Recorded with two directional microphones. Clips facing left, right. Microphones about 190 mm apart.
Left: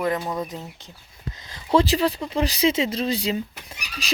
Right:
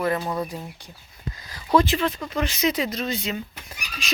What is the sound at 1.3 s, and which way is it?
Speech, 25° left (ahead or behind).